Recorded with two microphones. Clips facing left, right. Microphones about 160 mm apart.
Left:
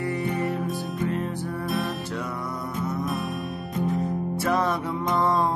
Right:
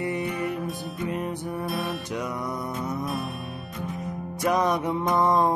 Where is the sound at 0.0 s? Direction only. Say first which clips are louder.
Even; 20° right (ahead or behind).